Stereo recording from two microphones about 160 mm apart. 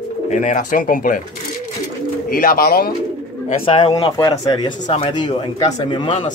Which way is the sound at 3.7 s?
40° left (ahead or behind).